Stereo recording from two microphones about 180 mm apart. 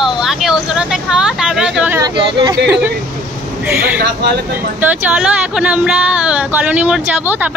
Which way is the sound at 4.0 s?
65° right (ahead or behind).